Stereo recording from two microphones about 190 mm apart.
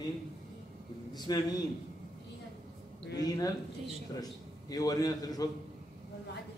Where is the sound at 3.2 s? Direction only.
20° left (ahead or behind).